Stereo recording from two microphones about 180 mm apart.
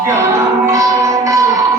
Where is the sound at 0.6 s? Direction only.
15° right (ahead or behind).